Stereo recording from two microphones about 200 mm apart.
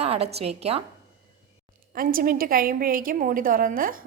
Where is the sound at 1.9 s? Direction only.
45° right (ahead or behind).